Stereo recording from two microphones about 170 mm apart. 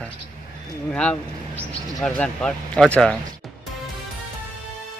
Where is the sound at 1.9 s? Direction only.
5° left (ahead or behind).